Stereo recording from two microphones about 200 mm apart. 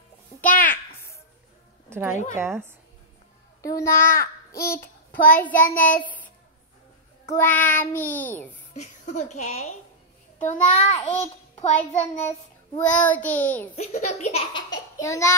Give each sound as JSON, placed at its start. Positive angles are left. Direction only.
{"t": 0.5, "sound": "a sound", "side_deg": 45}
{"t": 1.9, "sound": "a woman's voice", "side_deg": -10}
{"t": 3.6, "sound": "a child's voice", "side_deg": 15}
{"t": 5.1, "sound": "a child's voice", "side_deg": 45}
{"t": 7.3, "sound": "a child's voice", "side_deg": 10}
{"t": 8.7, "sound": "a woman's voice", "side_deg": 35}
{"t": 12.9, "sound": "a child's voice", "side_deg": 10}
{"t": 13.7, "sound": "a child's voice", "side_deg": 35}
{"t": 14.5, "sound": "a sound", "side_deg": 20}